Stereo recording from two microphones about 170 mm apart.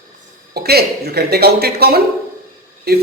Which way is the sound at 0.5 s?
70° right (ahead or behind).